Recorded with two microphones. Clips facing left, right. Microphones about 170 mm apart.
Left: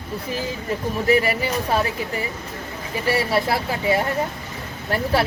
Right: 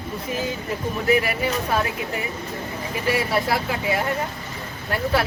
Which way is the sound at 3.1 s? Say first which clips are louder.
Left 2 dB; 30° left (ahead or behind).